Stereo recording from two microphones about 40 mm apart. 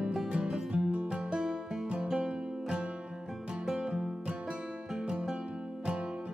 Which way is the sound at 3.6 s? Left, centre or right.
Centre.